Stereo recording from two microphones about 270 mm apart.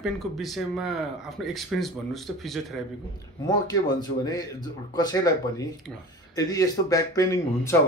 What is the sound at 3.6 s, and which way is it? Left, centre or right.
Speech, centre.